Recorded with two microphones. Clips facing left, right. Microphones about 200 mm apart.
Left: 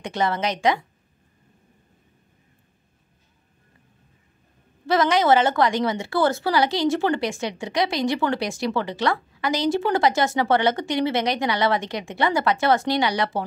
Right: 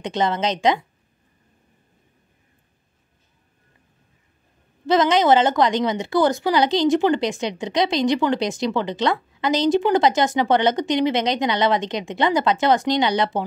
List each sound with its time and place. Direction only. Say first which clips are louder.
0.0 s a woman's voice: right 2 dB; 20° right (ahead or behind)
4.8 s a woman's voice: right 2 dB; 20° right (ahead or behind)